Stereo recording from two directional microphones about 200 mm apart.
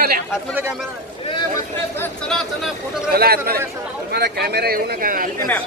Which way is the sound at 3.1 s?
50° right (ahead or behind).